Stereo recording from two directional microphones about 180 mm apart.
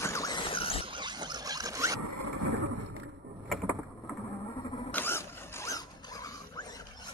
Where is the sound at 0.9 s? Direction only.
25° right (ahead or behind).